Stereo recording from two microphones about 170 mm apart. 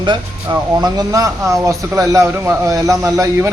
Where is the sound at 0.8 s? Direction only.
20° right (ahead or behind).